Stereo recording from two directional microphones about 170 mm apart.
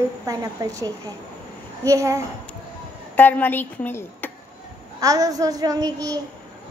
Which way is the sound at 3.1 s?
10° left (ahead or behind).